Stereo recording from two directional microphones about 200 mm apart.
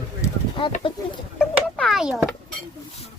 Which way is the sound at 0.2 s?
25° left (ahead or behind).